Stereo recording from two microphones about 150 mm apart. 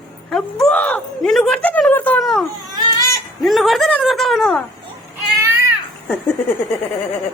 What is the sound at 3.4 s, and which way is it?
A woman's voice, centre (ahead or behind).